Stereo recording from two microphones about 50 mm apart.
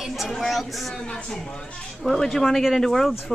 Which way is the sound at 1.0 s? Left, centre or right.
Centre.